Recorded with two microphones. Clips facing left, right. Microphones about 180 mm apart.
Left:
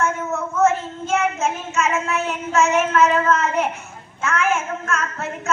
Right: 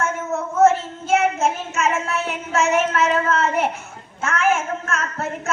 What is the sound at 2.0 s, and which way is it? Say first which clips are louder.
A child's voice: left 2 dB; 35° right (ahead or behind).